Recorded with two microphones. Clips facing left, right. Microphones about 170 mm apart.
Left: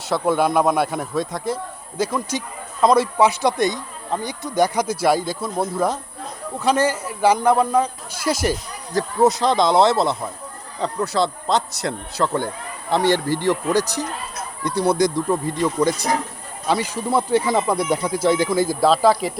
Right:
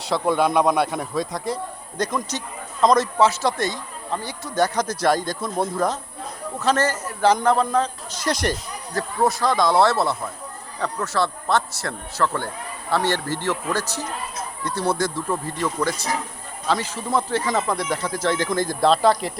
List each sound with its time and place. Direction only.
0.0 s speech: centre (ahead or behind)
9.2 s speech: 20° left (ahead or behind); by 19.3 s 5° left (ahead or behind)